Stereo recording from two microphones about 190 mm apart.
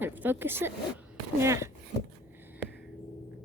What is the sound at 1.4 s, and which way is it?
Speech, 15° right (ahead or behind).